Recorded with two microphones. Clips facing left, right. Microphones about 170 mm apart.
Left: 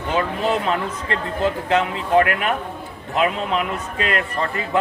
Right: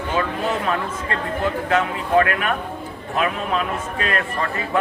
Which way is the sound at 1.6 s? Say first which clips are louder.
Left 1 dB; 20° left (ahead or behind).